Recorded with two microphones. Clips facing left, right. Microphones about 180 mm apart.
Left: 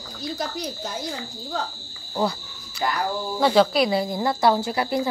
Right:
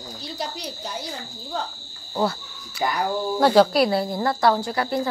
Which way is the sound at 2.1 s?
5° right (ahead or behind).